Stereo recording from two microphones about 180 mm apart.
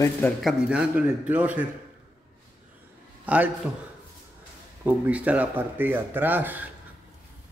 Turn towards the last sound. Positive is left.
turn(degrees=-10)  # may be behind; listen again after turning